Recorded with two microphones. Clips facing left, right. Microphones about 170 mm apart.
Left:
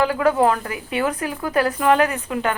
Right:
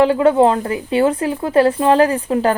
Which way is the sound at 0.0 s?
25° right (ahead or behind).